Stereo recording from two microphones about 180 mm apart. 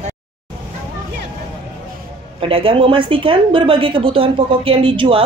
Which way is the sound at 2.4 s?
30° right (ahead or behind).